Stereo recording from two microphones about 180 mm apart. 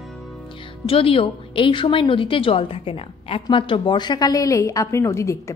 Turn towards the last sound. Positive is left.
turn(degrees=15)  # may be behind; listen again after turning